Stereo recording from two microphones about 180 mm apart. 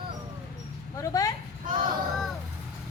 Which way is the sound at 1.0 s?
20° left (ahead or behind).